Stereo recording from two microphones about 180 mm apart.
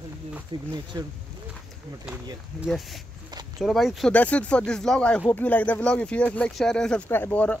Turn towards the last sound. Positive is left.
turn(degrees=10)  # may be behind; listen again after turning